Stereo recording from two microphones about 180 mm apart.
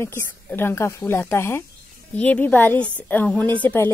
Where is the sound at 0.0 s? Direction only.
15° left (ahead or behind).